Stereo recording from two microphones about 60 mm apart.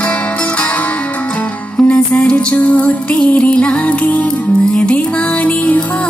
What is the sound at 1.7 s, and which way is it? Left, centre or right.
Music, left.